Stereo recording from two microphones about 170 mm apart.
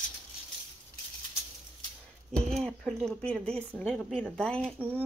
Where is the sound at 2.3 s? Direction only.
5° left (ahead or behind).